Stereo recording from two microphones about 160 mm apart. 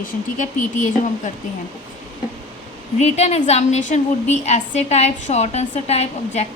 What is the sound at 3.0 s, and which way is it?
A woman's voice, 40° left (ahead or behind).